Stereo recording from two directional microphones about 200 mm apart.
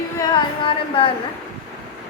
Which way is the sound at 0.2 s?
25° left (ahead or behind).